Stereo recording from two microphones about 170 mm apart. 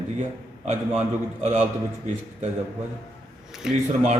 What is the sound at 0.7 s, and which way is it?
Speech, 40° right (ahead or behind).